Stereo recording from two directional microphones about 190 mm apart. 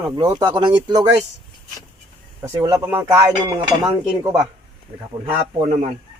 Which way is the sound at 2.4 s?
20° right (ahead or behind).